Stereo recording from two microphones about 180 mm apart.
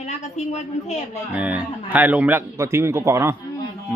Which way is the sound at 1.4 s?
10° right (ahead or behind).